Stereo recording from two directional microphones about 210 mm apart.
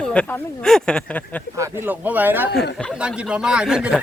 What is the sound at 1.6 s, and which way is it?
Speech, 10° right (ahead or behind).